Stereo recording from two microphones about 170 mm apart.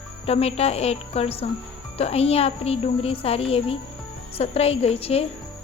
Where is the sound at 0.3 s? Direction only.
35° left (ahead or behind).